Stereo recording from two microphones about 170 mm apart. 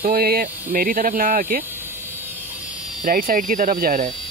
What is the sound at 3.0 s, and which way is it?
Speech, 55° right (ahead or behind).